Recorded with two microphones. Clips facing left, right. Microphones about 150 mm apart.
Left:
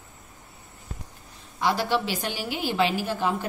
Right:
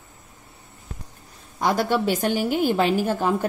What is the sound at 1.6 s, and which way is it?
A woman's voice, 45° right (ahead or behind).